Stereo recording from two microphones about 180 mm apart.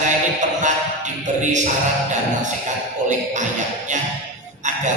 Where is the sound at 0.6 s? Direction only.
45° right (ahead or behind).